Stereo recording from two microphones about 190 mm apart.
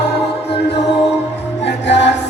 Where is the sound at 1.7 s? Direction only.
65° left (ahead or behind).